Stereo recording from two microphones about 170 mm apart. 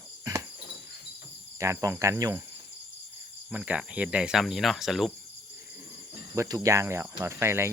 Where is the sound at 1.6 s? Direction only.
15° right (ahead or behind).